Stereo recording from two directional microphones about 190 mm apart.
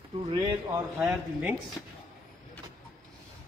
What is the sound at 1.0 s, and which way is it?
Speech, 5° right (ahead or behind).